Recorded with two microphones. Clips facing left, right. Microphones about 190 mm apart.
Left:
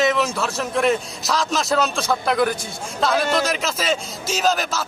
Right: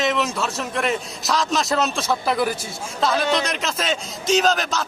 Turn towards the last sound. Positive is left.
turn(degrees=5)  # may be behind; listen again after turning